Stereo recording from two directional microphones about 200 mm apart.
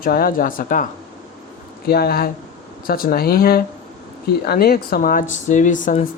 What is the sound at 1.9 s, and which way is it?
Speech, 50° left (ahead or behind).